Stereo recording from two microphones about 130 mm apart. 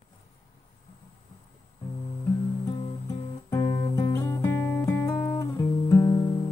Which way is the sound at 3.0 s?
30° left (ahead or behind).